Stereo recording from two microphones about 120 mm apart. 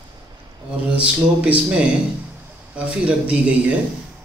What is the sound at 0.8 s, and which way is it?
Speech, 10° right (ahead or behind).